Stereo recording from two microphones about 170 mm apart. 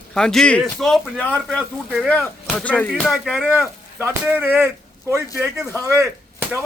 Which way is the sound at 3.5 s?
10° right (ahead or behind).